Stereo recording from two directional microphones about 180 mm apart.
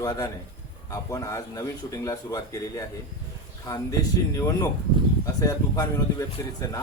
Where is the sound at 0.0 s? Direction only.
20° left (ahead or behind).